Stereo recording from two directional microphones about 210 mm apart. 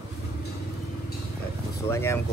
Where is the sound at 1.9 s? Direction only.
10° left (ahead or behind).